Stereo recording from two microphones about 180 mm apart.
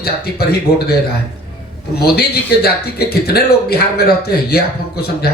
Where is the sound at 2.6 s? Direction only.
60° left (ahead or behind).